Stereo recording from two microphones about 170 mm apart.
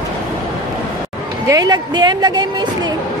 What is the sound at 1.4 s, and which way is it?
A woman's voice, 20° right (ahead or behind).